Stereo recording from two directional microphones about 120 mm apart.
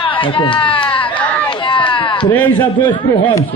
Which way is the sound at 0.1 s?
45° left (ahead or behind).